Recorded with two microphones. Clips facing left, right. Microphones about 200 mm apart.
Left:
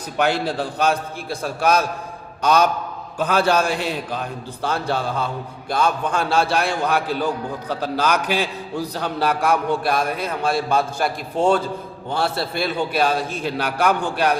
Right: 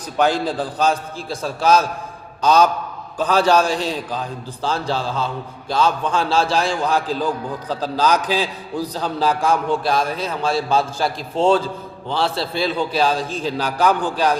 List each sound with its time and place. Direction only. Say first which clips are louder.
0.2 s a man's voice: right 2 dB; 65° left (ahead or behind)